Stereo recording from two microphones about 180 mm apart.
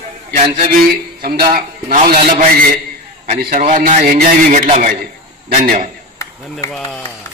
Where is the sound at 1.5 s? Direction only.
50° right (ahead or behind).